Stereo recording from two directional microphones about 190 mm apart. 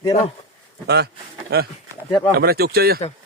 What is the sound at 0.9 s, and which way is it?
A man's voice, 60° right (ahead or behind).